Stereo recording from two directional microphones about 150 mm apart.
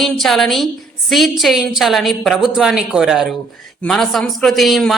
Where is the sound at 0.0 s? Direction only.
Centre (ahead or behind).